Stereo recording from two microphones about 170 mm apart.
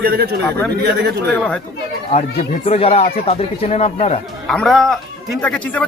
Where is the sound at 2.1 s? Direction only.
35° left (ahead or behind).